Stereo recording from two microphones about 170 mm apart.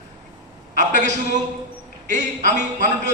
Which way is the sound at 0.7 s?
45° right (ahead or behind).